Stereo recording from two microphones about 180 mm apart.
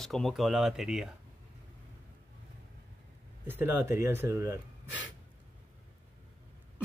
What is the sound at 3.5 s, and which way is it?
Speech, 10° right (ahead or behind).